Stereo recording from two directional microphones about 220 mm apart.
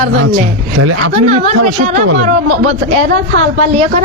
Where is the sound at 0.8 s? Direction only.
90° right.